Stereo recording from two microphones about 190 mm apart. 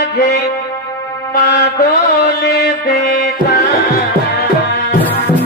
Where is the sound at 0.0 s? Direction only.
50° left (ahead or behind).